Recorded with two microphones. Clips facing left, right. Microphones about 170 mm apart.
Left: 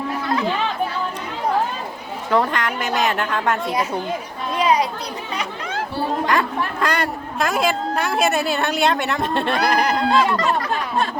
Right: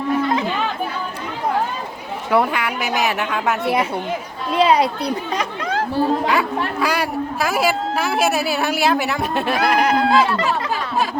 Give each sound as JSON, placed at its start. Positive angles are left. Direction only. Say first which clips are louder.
{"t": 2.3, "sound": "speech", "louder": "right 1 dB", "side_deg": -10}
{"t": 4.5, "sound": "speech", "louder": "right 3 dB", "side_deg": -30}
{"t": 5.3, "sound": "chatter", "louder": "right 4 dB", "side_deg": -40}
{"t": 6.2, "sound": "a woman's voice", "louder": "right 1 dB", "side_deg": -5}
{"t": 10.4, "sound": "a sound", "louder": "even", "side_deg": -5}